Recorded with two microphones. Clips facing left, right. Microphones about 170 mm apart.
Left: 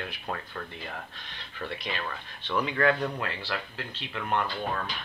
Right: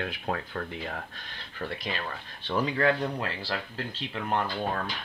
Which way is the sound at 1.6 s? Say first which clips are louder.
Right 1 dB; 40° right (ahead or behind).